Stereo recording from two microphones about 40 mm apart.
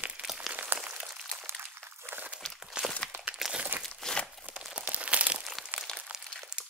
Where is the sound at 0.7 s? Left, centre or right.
Right.